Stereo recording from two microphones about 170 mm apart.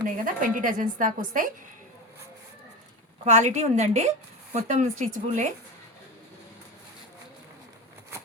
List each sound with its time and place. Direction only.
0.3 s a woman's voice: 50° right (ahead or behind)
3.2 s a woman's voice: 45° right (ahead or behind)